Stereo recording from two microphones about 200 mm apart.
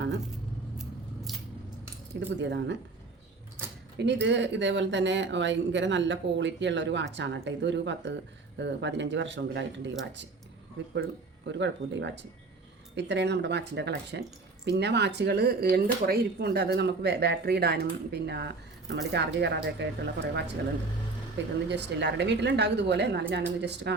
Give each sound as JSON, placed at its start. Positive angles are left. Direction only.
{"t": 0.8, "sound": "scissors", "side_deg": 0}
{"t": 2.4, "sound": "speech", "side_deg": -60}
{"t": 3.9, "sound": "speech", "side_deg": -60}
{"t": 11.4, "sound": "speech", "side_deg": -65}